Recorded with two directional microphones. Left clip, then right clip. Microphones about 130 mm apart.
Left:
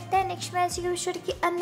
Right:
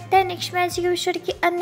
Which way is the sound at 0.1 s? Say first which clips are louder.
Right 7 dB; 25° right (ahead or behind).